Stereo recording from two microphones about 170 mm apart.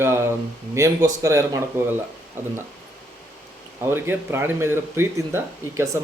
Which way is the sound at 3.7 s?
15° right (ahead or behind).